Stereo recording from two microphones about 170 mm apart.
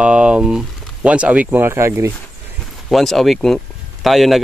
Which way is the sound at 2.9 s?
Centre (ahead or behind).